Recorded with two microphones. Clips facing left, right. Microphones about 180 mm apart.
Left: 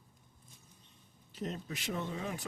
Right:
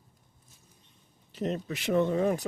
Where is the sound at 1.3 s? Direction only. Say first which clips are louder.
Right 8 dB; 75° right (ahead or behind); by 2.4 s 50° right (ahead or behind).